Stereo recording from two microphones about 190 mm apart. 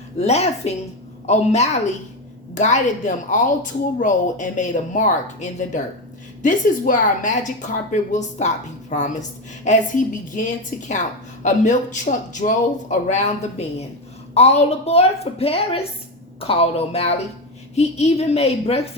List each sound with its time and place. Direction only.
0.2 s a woman's voice: 35° left (ahead or behind)